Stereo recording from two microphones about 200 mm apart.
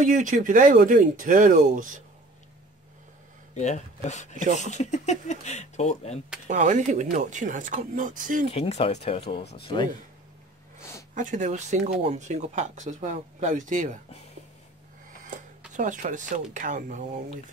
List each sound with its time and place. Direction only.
0.0 s speech: 40° right (ahead or behind)
3.5 s speech: 35° left (ahead or behind)
6.4 s speech: 40° right (ahead or behind)
8.5 s speech: 30° left (ahead or behind)
11.1 s speech: 40° right (ahead or behind)
15.7 s speech: 40° right (ahead or behind)